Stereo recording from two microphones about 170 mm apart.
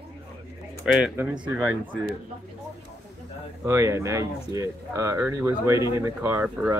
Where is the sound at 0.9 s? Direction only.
5° right (ahead or behind).